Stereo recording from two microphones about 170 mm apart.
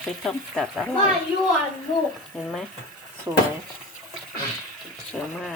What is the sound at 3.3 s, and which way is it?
Speech, 15° right (ahead or behind).